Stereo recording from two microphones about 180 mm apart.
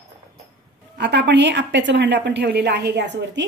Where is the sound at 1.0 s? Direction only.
70° right (ahead or behind).